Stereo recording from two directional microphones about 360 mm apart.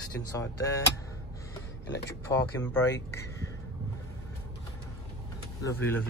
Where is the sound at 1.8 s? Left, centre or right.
Left.